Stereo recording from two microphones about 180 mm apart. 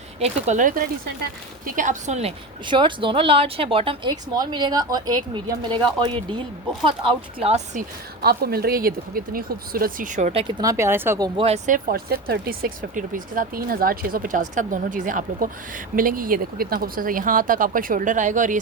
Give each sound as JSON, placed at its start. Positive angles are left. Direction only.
{"t": 0.2, "sound": "a woman's voice", "side_deg": -40}
{"t": 8.2, "sound": "speech", "side_deg": -60}
{"t": 10.4, "sound": "speech", "side_deg": -20}
{"t": 11.3, "sound": "speech", "side_deg": -35}